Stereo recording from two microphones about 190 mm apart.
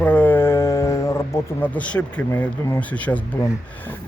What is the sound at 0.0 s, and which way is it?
Speech, 10° left (ahead or behind).